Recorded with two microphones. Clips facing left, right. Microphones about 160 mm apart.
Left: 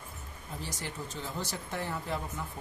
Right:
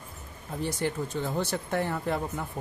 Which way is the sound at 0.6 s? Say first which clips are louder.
Right 11 dB; 55° right (ahead or behind).